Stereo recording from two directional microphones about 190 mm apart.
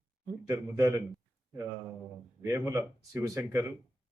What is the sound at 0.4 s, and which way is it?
Speech, 15° right (ahead or behind).